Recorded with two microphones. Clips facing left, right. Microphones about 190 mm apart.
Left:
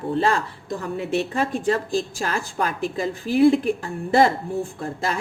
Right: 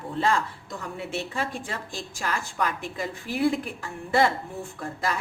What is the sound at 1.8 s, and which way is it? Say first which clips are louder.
A woman's voice: left 8 dB; 30° left (ahead or behind).